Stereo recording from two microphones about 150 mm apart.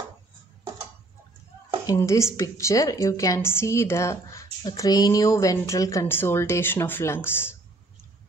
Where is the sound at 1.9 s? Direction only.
20° left (ahead or behind).